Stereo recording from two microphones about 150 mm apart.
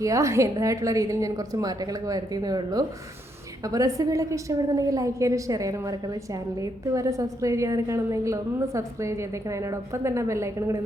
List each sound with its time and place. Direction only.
0.0 s a woman's voice: 20° right (ahead or behind)